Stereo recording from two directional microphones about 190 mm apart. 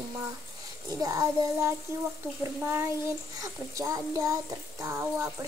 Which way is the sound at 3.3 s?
15° right (ahead or behind).